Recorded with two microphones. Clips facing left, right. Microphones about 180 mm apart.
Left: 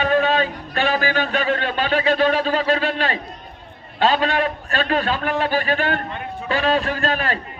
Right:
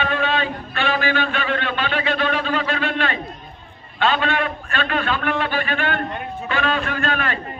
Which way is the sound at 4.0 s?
35° left (ahead or behind).